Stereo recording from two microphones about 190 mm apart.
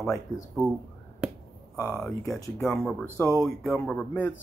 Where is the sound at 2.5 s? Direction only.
Centre (ahead or behind).